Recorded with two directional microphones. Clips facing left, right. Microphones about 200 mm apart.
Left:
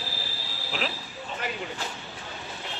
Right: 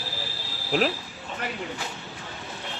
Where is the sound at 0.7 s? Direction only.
50° right (ahead or behind).